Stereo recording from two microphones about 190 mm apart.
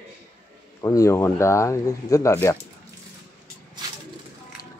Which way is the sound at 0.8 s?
15° left (ahead or behind).